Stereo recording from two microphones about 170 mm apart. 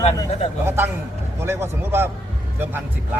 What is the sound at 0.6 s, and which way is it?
Speech, 15° right (ahead or behind).